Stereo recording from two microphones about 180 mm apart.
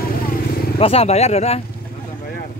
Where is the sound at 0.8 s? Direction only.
35° left (ahead or behind).